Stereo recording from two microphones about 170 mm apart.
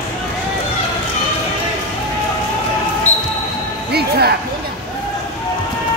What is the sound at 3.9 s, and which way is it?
Music, 70° right (ahead or behind).